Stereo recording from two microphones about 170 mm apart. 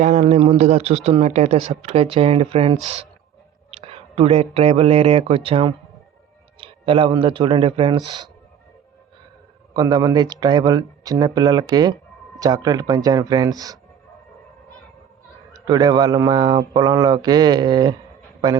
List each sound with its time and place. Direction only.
0.0 s speech: 45° right (ahead or behind); by 8.3 s 25° right (ahead or behind)
9.7 s speech: 25° right (ahead or behind)
15.5 s speech: 25° right (ahead or behind)